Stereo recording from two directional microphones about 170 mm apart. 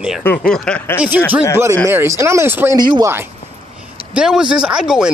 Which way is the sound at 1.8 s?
15° right (ahead or behind).